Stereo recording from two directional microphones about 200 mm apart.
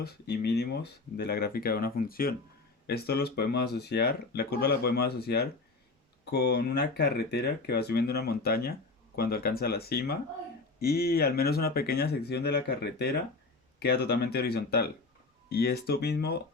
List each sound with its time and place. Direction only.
0.0 s speech: 55° left (ahead or behind)